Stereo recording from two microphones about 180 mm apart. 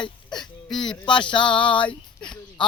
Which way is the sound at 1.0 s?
25° left (ahead or behind).